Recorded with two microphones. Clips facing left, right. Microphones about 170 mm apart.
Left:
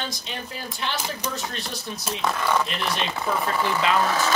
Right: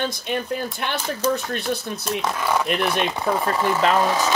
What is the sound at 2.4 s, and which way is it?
Speech, 10° right (ahead or behind).